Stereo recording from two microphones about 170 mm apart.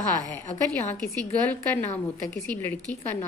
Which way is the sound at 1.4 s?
10° left (ahead or behind).